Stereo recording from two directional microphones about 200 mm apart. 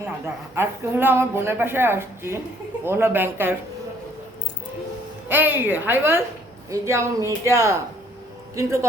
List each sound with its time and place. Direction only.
0.5 s speech: 10° right (ahead or behind)
5.3 s speech: 10° right (ahead or behind)